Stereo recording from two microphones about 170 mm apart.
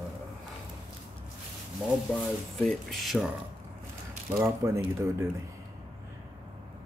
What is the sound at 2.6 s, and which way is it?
Speech, centre (ahead or behind).